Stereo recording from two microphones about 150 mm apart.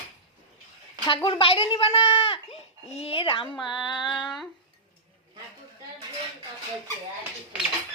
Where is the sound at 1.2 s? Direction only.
40° left (ahead or behind).